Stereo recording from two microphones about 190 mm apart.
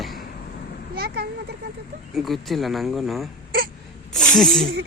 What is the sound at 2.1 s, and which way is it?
Speech, centre (ahead or behind).